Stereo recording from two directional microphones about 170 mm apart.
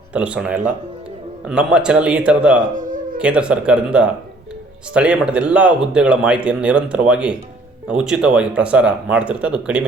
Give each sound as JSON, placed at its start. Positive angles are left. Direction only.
{"t": 0.1, "sound": "a man's voice", "side_deg": -5}
{"t": 2.6, "sound": "speech", "side_deg": -50}
{"t": 3.2, "sound": "a man's voice", "side_deg": -5}